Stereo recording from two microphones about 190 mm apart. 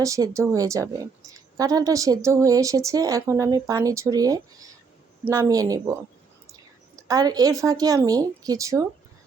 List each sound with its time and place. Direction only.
0.0 s a woman's voice: 15° right (ahead or behind)